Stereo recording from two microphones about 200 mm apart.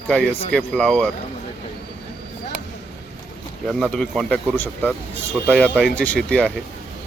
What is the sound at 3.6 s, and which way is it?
Speech, centre (ahead or behind).